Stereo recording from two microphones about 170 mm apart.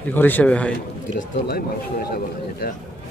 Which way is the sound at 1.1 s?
65° left (ahead or behind).